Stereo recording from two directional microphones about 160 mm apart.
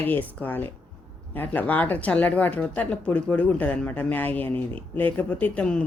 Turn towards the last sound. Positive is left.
turn(degrees=5)  # may be behind; listen again after turning